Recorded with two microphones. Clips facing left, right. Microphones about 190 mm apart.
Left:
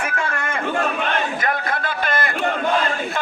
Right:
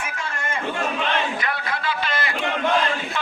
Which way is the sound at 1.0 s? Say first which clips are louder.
Left 2 dB; 50° left (ahead or behind).